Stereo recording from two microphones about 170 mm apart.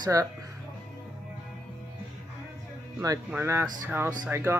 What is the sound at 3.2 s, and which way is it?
A woman's voice, 15° right (ahead or behind).